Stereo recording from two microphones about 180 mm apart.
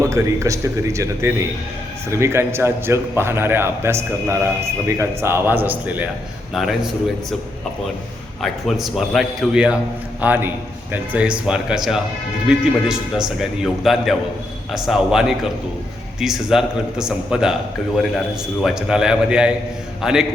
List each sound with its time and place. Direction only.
0.0 s a man's voice: 15° right (ahead or behind)
8.4 s a man's voice: centre (ahead or behind)